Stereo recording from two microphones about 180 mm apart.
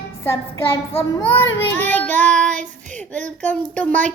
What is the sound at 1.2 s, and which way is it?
Speech, 10° left (ahead or behind).